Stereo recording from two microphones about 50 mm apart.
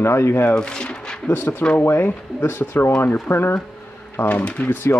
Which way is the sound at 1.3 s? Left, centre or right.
Left.